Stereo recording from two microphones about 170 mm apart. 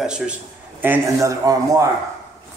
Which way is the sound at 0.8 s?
15° right (ahead or behind).